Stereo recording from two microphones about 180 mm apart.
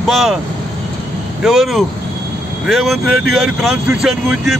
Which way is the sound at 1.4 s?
Centre (ahead or behind).